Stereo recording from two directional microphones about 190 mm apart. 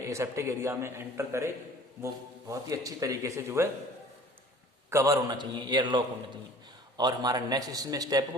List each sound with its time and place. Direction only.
0.1 s a man's voice: 15° right (ahead or behind)
2.5 s a man's voice: 15° right (ahead or behind)
4.9 s a man's voice: 15° right (ahead or behind)